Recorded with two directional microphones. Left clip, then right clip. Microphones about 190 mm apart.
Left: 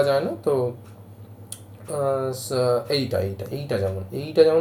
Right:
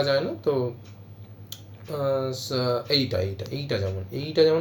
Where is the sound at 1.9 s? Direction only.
10° right (ahead or behind).